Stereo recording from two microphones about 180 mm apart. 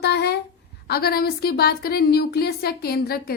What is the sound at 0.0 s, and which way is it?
A woman's voice, 65° left (ahead or behind).